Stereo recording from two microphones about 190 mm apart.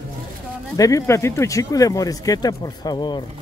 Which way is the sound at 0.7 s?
20° left (ahead or behind).